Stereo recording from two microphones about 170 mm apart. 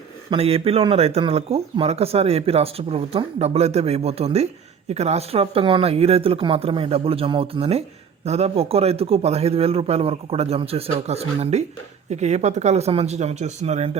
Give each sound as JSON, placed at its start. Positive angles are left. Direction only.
{"t": 0.3, "sound": "speech", "side_deg": -35}